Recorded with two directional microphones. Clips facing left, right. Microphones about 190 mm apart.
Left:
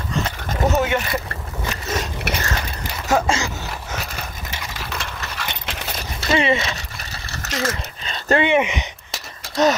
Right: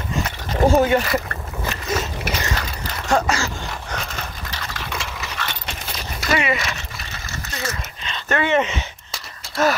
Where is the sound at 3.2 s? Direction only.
20° left (ahead or behind).